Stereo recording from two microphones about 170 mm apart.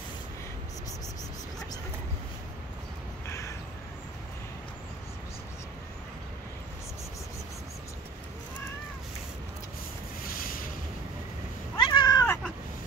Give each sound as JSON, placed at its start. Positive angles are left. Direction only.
{"t": 3.3, "sound": "crow", "side_deg": 15}
{"t": 10.2, "sound": "boat", "side_deg": 55}
{"t": 11.7, "sound": "cat", "side_deg": 25}